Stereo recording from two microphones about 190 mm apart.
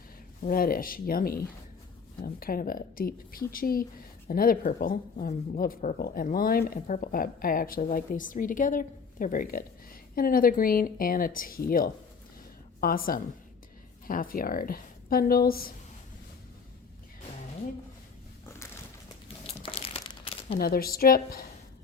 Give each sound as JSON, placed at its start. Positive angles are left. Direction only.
{"t": 0.4, "sound": "speech", "side_deg": 50}
{"t": 19.7, "sound": "crumpling", "side_deg": 30}
{"t": 20.6, "sound": "speech", "side_deg": 50}